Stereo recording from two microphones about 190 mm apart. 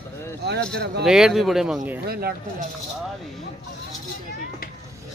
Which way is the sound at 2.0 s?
55° right (ahead or behind).